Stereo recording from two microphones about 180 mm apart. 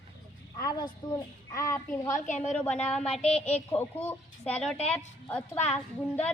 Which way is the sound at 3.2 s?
35° left (ahead or behind).